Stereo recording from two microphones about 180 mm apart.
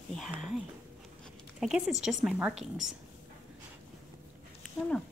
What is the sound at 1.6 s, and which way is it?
A woman's voice, 5° right (ahead or behind).